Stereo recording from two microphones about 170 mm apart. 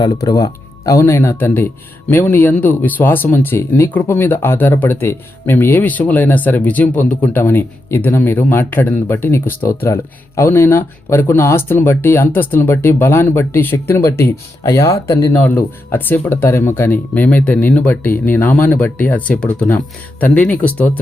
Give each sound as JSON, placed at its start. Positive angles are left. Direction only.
{"t": 0.0, "sound": "a man's voice", "side_deg": 20}